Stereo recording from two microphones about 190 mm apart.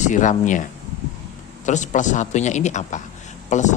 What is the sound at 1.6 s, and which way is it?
Speech, 40° left (ahead or behind).